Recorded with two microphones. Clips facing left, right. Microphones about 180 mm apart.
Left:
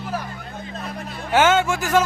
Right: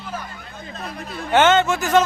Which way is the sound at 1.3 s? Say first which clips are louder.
Right 1 dB; 5° left (ahead or behind).